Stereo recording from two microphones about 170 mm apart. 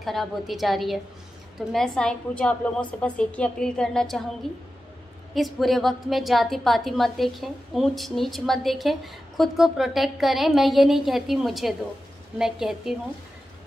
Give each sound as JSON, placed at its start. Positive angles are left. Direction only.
{"t": 0.0, "sound": "a woman's voice", "side_deg": 0}